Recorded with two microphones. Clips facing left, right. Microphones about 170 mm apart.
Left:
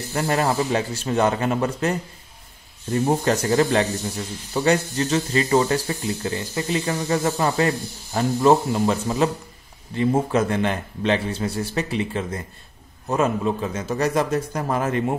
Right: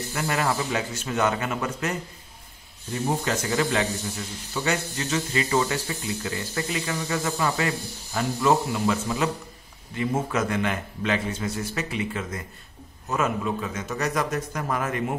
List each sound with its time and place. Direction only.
0.1 s speech: 35° left (ahead or behind)
3.1 s speech: 40° left (ahead or behind)